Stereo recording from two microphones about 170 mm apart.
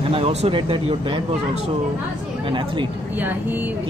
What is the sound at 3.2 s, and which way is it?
Speech, 10° right (ahead or behind).